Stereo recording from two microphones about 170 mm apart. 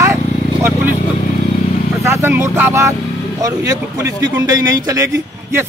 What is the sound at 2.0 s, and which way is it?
A man's voice, 15° right (ahead or behind).